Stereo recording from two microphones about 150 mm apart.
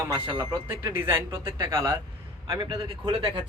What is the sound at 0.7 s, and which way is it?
A man's voice, 15° right (ahead or behind).